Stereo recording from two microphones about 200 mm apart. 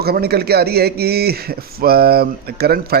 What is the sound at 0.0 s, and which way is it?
Speech, 50° right (ahead or behind).